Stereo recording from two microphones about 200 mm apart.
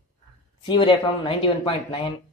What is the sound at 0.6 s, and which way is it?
Speech, 25° left (ahead or behind).